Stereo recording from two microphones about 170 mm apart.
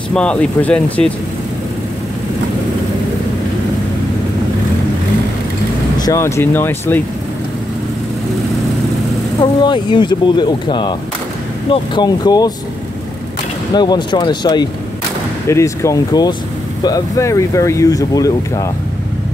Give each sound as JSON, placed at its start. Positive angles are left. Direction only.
{"t": 0.1, "sound": "speech", "side_deg": 5}
{"t": 5.9, "sound": "speech", "side_deg": 20}
{"t": 9.4, "sound": "speech", "side_deg": 25}
{"t": 13.7, "sound": "speech", "side_deg": 25}